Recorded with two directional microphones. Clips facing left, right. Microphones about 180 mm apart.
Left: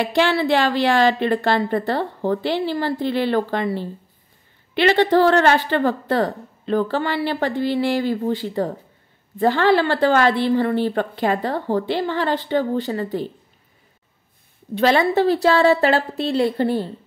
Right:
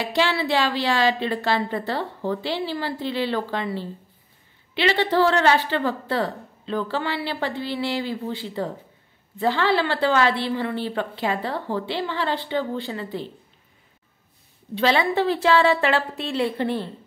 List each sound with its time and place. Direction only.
0.0 s a woman's voice: 50° left (ahead or behind)
14.8 s a woman's voice: 45° left (ahead or behind)